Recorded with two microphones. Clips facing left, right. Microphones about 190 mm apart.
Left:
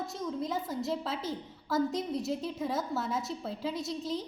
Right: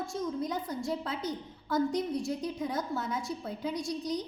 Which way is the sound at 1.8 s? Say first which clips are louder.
Right 1 dB; 20° left (ahead or behind).